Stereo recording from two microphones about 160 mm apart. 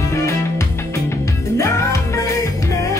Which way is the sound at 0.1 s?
20° left (ahead or behind).